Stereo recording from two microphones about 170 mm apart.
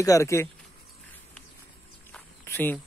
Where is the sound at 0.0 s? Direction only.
20° left (ahead or behind).